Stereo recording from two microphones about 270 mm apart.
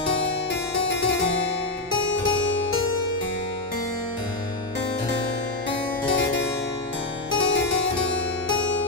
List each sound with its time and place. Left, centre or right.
0.7 s harpsichord: left
7.2 s harpsichord: left